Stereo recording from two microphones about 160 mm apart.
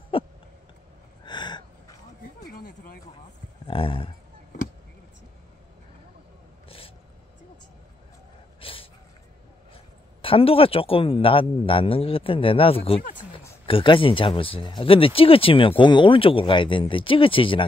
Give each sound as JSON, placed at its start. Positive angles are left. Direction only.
{"t": 1.2, "sound": "gasp", "side_deg": 30}
{"t": 3.6, "sound": "speech", "side_deg": 35}
{"t": 8.5, "sound": "a sound", "side_deg": 35}
{"t": 10.2, "sound": "speech", "side_deg": 35}